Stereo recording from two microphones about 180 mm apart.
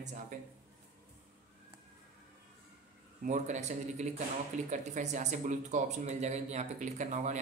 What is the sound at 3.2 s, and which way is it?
Speech, 40° right (ahead or behind).